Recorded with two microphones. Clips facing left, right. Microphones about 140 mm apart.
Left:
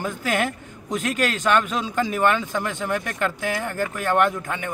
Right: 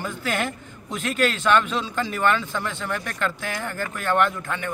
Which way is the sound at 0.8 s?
45° left (ahead or behind).